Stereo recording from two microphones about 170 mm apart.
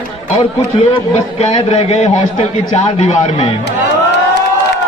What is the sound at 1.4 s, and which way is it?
A man's voice, 40° left (ahead or behind).